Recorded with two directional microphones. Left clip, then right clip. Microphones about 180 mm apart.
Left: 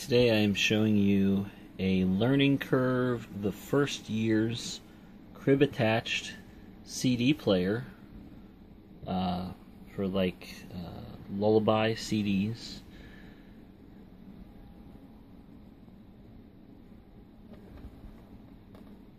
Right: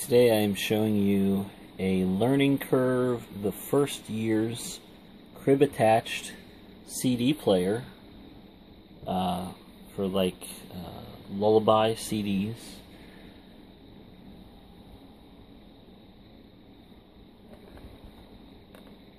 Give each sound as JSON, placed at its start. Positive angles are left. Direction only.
{"t": 0.0, "sound": "speech", "side_deg": -15}
{"t": 9.0, "sound": "speech", "side_deg": -15}
{"t": 11.3, "sound": "speech", "side_deg": -15}
{"t": 11.6, "sound": "speech", "side_deg": 15}
{"t": 12.1, "sound": "speech", "side_deg": -15}